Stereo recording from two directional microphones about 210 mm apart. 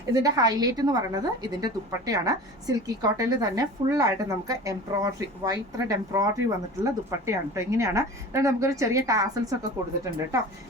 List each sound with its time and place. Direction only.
0.1 s a woman's voice: 15° right (ahead or behind)